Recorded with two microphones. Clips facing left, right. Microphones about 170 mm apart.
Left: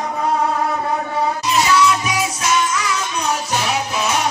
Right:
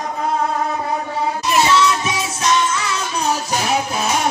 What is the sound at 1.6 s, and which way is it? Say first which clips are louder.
Music: left 1 dB; 25° right (ahead or behind).